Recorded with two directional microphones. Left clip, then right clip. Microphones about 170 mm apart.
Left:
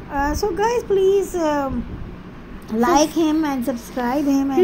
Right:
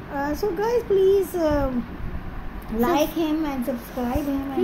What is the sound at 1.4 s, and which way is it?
Speech, 30° left (ahead or behind).